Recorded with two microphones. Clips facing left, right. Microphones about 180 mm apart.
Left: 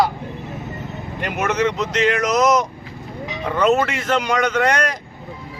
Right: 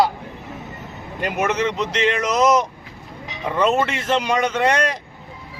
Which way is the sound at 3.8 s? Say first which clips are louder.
Even; 30° right (ahead or behind).